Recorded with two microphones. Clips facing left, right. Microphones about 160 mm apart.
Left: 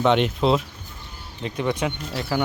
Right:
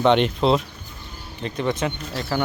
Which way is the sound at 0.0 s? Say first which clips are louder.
Right 2 dB; 5° left (ahead or behind).